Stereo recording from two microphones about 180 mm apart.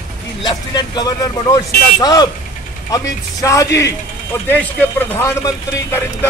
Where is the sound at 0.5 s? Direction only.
20° left (ahead or behind).